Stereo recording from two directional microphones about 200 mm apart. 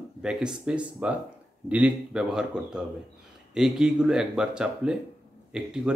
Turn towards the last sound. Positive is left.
turn(degrees=-5)  # may be behind; listen again after turning